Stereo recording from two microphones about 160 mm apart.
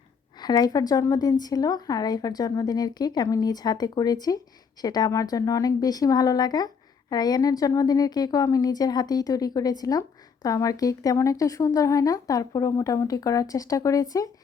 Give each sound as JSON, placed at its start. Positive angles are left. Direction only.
{"t": 0.3, "sound": "a woman's voice", "side_deg": 25}